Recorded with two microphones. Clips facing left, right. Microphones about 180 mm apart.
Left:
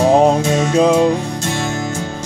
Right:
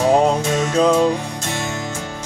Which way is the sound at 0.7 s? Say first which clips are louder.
Left 2 dB; 10° left (ahead or behind).